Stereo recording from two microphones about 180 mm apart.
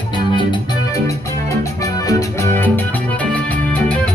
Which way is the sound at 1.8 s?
20° left (ahead or behind).